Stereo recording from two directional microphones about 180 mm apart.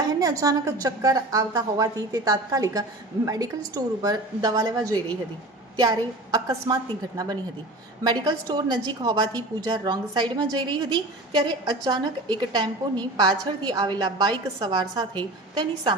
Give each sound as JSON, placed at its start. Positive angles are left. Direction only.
{"t": 0.0, "sound": "a woman's voice", "side_deg": -20}
{"t": 8.0, "sound": "a woman's voice", "side_deg": -25}